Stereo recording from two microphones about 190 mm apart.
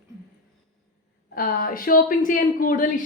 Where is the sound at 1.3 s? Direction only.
50° left (ahead or behind).